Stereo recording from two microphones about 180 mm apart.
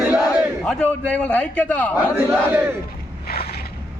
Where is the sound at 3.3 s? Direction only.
60° left (ahead or behind).